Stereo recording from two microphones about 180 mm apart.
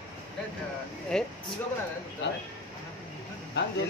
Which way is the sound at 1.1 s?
5° left (ahead or behind).